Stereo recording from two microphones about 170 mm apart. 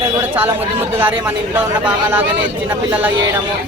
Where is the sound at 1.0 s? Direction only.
10° right (ahead or behind).